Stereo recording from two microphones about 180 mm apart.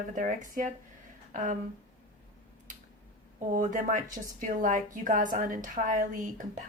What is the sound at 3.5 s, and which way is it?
Speech, 45° right (ahead or behind).